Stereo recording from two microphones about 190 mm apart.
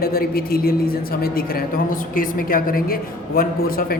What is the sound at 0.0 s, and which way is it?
A woman's voice, 55° left (ahead or behind).